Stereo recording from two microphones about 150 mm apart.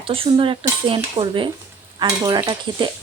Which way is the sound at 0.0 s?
35° right (ahead or behind).